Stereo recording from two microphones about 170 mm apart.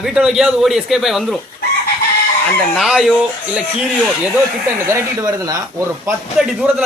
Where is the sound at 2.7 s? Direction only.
Centre (ahead or behind).